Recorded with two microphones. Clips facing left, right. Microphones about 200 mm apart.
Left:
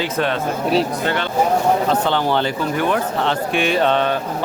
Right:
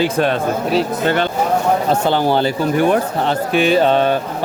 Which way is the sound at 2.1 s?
40° right (ahead or behind).